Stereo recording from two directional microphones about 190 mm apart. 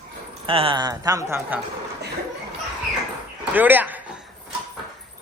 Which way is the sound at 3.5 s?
10° right (ahead or behind).